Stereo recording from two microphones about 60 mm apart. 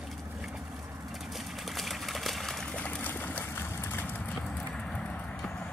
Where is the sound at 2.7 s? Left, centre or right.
Left.